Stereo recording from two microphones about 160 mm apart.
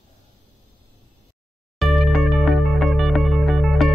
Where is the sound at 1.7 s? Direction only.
Centre (ahead or behind).